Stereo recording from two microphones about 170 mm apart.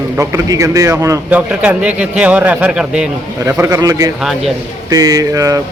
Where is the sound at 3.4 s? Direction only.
20° right (ahead or behind).